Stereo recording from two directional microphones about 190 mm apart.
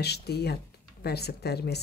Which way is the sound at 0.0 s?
60° left (ahead or behind).